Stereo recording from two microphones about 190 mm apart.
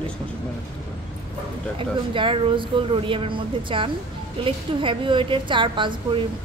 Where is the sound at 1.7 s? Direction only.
25° right (ahead or behind).